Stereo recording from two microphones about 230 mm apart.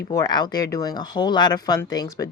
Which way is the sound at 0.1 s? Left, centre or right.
Centre.